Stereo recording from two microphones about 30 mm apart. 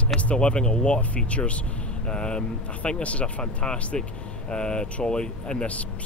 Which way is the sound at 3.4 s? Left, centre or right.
Left.